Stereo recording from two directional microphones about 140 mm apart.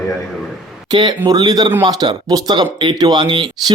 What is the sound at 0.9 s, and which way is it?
A man's voice, 35° right (ahead or behind).